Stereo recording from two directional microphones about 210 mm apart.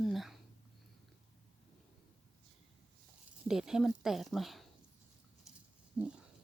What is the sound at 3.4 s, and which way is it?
Speech, 5° right (ahead or behind).